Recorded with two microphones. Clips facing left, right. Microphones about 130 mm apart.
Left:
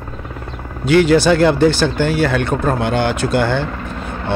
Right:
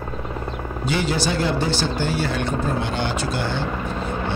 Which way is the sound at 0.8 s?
65° left (ahead or behind).